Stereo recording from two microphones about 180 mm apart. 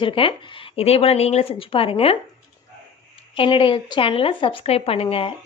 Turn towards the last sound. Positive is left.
turn(degrees=30)  # may be behind; listen again after turning